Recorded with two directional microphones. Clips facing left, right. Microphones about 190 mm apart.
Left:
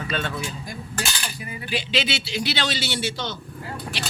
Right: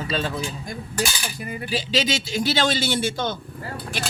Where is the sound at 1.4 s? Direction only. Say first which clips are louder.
Right 2 dB; 40° right (ahead or behind).